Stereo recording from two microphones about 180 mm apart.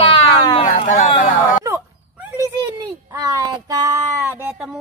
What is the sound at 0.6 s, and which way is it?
Speech, 45° left (ahead or behind).